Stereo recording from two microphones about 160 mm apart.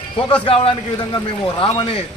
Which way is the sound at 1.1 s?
25° left (ahead or behind).